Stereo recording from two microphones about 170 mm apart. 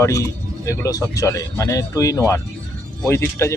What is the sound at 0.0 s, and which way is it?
Speech, 20° left (ahead or behind).